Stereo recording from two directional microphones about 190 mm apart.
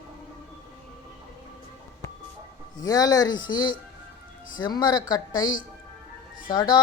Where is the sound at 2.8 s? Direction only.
20° left (ahead or behind).